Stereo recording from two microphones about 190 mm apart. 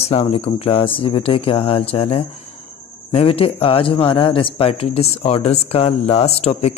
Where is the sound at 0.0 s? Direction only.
30° left (ahead or behind).